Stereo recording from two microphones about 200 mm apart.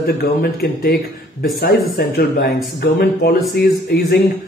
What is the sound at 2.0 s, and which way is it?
Speech, 55° left (ahead or behind).